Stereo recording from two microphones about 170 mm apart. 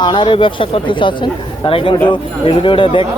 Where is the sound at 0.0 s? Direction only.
30° left (ahead or behind).